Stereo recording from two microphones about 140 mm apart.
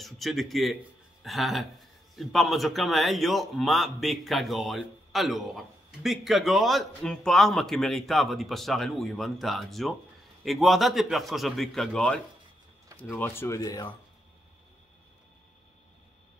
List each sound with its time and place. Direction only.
0.0 s a man's voice: centre (ahead or behind)
13.1 s speech: 15° left (ahead or behind)